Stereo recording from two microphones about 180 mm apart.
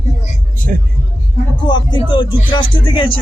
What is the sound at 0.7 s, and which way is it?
Speech, 50° right (ahead or behind).